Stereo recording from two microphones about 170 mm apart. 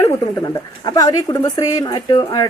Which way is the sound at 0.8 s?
20° left (ahead or behind).